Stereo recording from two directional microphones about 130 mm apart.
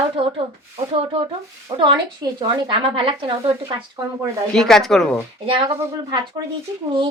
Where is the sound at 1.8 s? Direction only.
40° right (ahead or behind).